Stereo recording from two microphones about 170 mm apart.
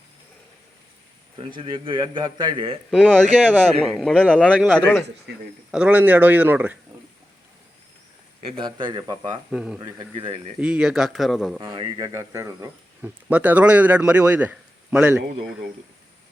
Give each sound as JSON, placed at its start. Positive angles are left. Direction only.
{"t": 1.5, "sound": "a man's voice", "side_deg": -30}
{"t": 3.1, "sound": "speech", "side_deg": -10}
{"t": 3.8, "sound": "speech", "side_deg": 0}
{"t": 5.7, "sound": "speech", "side_deg": -5}
{"t": 8.4, "sound": "a man's voice", "side_deg": -30}
{"t": 9.5, "sound": "speech", "side_deg": -5}
{"t": 10.0, "sound": "speech", "side_deg": -30}
{"t": 10.6, "sound": "speech", "side_deg": -5}
{"t": 11.5, "sound": "speech", "side_deg": -25}